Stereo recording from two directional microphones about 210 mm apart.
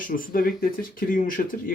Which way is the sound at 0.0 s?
40° left (ahead or behind).